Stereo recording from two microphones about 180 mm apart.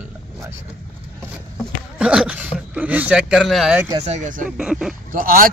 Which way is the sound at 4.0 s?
40° right (ahead or behind).